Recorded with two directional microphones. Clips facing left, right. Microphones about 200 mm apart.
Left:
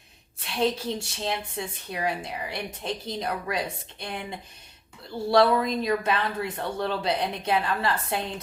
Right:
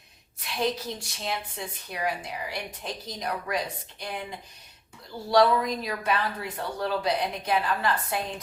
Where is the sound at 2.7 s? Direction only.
25° left (ahead or behind).